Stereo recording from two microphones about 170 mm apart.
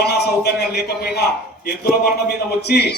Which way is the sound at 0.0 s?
70° left (ahead or behind).